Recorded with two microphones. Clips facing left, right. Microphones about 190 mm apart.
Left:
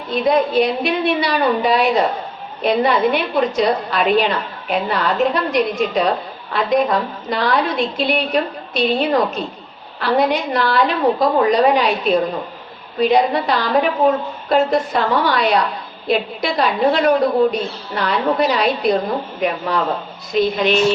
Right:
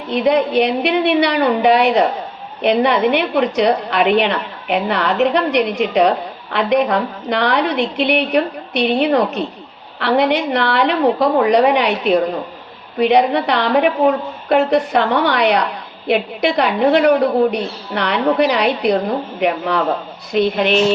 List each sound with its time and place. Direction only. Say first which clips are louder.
0.1 s a woman's voice: right 1 dB; 70° right (ahead or behind)